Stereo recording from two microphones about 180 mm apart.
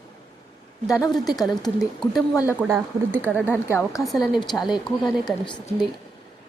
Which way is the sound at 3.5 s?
15° left (ahead or behind).